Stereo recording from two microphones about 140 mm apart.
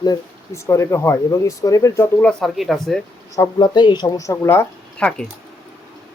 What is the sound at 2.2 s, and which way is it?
Speech, centre (ahead or behind).